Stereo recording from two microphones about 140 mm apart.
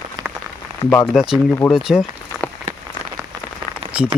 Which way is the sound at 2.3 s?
5° left (ahead or behind).